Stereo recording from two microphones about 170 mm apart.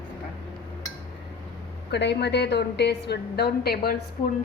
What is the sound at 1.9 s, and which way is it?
A woman's voice, 80° left.